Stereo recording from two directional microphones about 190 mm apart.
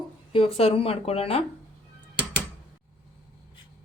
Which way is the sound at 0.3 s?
30° left (ahead or behind).